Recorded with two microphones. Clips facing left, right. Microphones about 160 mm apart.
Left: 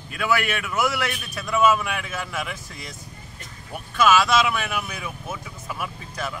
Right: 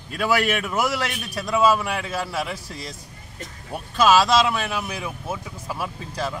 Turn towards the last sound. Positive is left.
turn(degrees=-30)  # may be behind; listen again after turning